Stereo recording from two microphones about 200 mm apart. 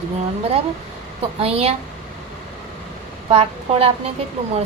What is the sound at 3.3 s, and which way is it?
Speech, 30° right (ahead or behind).